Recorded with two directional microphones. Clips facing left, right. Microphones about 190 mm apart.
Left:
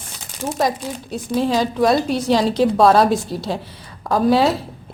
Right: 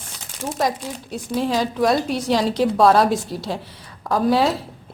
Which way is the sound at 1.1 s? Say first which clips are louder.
Left 3 dB; 30° left (ahead or behind).